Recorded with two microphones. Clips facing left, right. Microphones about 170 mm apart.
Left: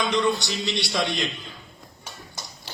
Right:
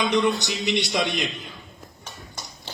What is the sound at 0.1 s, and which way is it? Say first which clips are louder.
A man's voice: right 1 dB; 20° right (ahead or behind).